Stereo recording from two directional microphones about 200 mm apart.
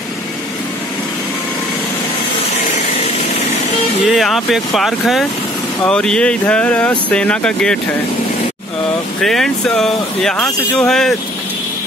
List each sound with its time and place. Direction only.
4.0 s speech: centre (ahead or behind)
9.2 s speech: centre (ahead or behind)